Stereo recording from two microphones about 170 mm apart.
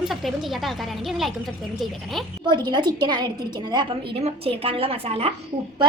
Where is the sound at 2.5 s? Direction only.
25° right (ahead or behind).